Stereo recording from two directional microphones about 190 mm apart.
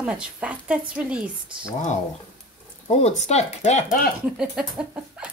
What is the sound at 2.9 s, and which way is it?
Speech, 35° left (ahead or behind).